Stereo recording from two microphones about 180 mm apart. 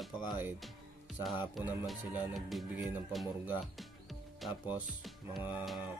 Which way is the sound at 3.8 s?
Centre (ahead or behind).